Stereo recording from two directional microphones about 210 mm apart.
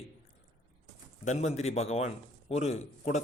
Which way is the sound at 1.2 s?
35° left (ahead or behind).